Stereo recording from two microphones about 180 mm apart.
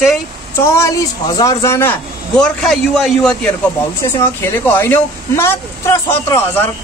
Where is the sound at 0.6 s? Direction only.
15° left (ahead or behind).